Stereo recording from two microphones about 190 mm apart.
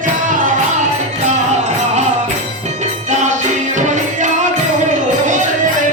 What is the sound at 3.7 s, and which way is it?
Music, 40° right (ahead or behind).